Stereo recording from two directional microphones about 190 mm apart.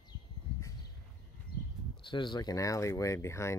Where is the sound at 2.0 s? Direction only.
25° left (ahead or behind).